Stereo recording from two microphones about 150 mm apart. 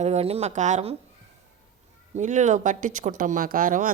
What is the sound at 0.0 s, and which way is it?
Speech, 45° right (ahead or behind).